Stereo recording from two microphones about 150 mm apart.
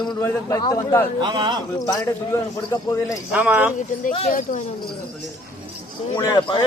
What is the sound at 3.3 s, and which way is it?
Speech, 10° right (ahead or behind).